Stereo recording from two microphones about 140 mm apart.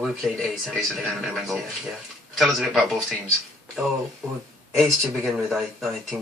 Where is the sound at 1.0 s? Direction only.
Centre (ahead or behind).